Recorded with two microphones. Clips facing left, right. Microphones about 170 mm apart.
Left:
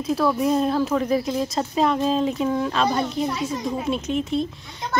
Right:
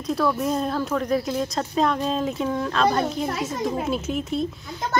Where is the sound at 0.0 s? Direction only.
5° left (ahead or behind).